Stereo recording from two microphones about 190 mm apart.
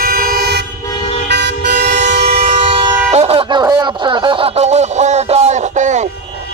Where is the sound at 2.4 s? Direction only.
30° right (ahead or behind).